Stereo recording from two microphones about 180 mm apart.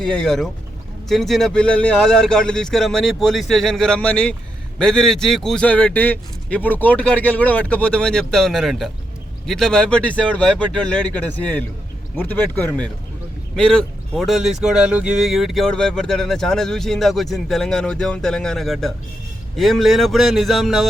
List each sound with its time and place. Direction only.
0.0 s speech: 5° left (ahead or behind)